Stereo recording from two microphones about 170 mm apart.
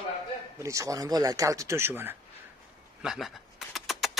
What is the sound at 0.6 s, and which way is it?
Speech, 20° right (ahead or behind).